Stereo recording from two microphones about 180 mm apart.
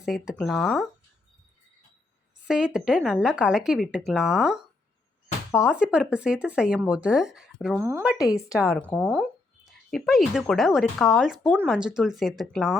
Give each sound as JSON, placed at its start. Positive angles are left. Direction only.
{"t": 0.0, "sound": "a woman's voice", "side_deg": 0}
{"t": 2.5, "sound": "a woman's voice", "side_deg": -5}
{"t": 7.8, "sound": "speech", "side_deg": -15}
{"t": 8.2, "sound": "a woman's voice", "side_deg": 15}
{"t": 9.0, "sound": "a woman's voice", "side_deg": -5}
{"t": 11.8, "sound": "a woman's voice", "side_deg": -5}